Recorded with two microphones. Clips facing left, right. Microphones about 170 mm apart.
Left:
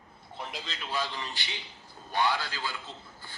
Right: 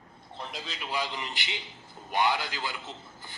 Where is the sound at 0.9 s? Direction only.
15° right (ahead or behind).